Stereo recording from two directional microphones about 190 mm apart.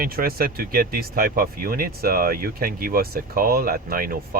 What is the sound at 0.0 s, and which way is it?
Speech, 50° right (ahead or behind).